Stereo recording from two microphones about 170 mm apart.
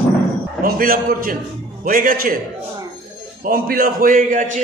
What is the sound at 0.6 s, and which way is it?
A man's voice, 60° right (ahead or behind).